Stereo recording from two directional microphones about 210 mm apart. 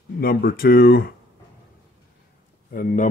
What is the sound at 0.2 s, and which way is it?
Speech, 45° left (ahead or behind).